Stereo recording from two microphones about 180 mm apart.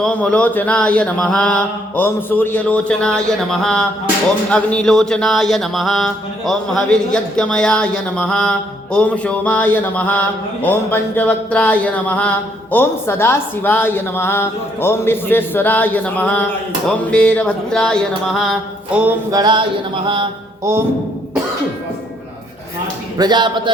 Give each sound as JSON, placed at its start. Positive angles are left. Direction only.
{"t": 0.0, "sound": "a woman's voice", "side_deg": 5}
{"t": 2.0, "sound": "a sound", "side_deg": 10}
{"t": 12.7, "sound": "a woman's voice", "side_deg": 10}
{"t": 17.1, "sound": "a sound", "side_deg": 5}
{"t": 19.3, "sound": "speech", "side_deg": -25}
{"t": 20.7, "sound": "speech", "side_deg": -15}
{"t": 23.1, "sound": "speech", "side_deg": -25}